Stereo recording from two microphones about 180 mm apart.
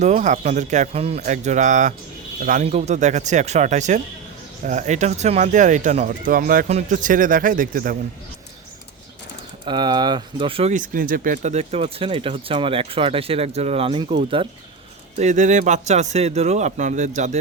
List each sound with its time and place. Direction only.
0.0 s speech: 40° right (ahead or behind)
6.7 s speech: 40° right (ahead or behind)
9.6 s speech: 25° right (ahead or behind)
10.8 s speech: 50° right (ahead or behind); by 14.4 s 30° right (ahead or behind)
15.2 s speech: 40° right (ahead or behind)